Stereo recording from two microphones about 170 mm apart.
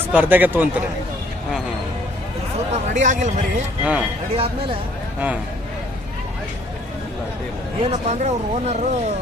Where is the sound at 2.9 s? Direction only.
45° right (ahead or behind).